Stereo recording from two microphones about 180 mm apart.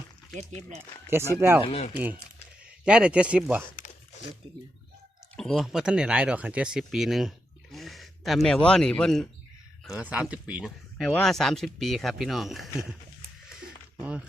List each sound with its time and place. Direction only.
0.3 s speech: 40° right (ahead or behind)
1.4 s speech: 10° right (ahead or behind)
1.6 s speech: 35° left (ahead or behind)
1.9 s speech: 10° right (ahead or behind)
5.5 s speech: 5° right (ahead or behind)
10.0 s speech: 10° right (ahead or behind)
13.9 s a sound: 10° right (ahead or behind)